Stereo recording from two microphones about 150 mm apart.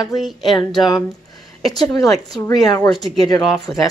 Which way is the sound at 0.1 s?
Centre (ahead or behind).